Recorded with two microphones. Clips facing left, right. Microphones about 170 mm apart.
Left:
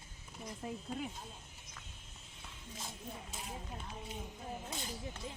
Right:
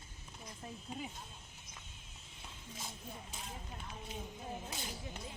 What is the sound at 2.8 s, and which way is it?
Speech, centre (ahead or behind).